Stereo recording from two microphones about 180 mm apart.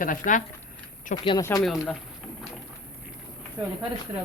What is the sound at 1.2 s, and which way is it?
Speech, 25° left (ahead or behind).